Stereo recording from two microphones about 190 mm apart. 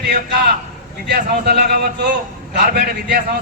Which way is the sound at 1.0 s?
55° right (ahead or behind).